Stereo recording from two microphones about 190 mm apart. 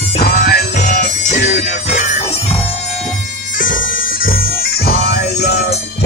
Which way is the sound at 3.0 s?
45° left (ahead or behind).